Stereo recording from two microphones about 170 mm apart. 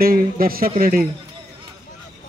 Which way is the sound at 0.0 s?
60° right (ahead or behind).